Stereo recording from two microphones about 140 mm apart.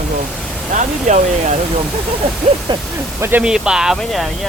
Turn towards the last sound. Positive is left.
turn(degrees=0)  # may be behind; listen again after turning